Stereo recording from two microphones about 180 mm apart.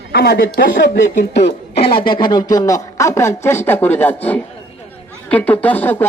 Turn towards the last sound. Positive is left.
turn(degrees=10)  # may be behind; listen again after turning